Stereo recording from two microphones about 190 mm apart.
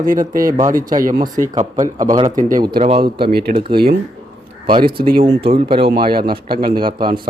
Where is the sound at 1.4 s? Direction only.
40° right (ahead or behind).